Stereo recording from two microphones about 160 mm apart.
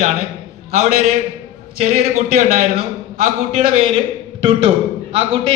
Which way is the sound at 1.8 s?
50° right (ahead or behind).